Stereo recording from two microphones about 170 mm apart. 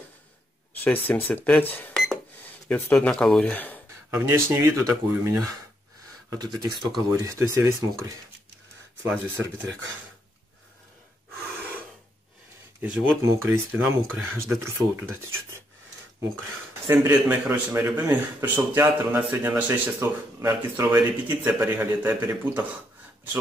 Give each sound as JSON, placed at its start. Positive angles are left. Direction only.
{"t": 0.8, "sound": "speech", "side_deg": 10}
{"t": 4.1, "sound": "speech", "side_deg": -15}
{"t": 9.0, "sound": "speech", "side_deg": -10}
{"t": 12.8, "sound": "speech", "side_deg": -5}
{"t": 16.8, "sound": "speech", "side_deg": -15}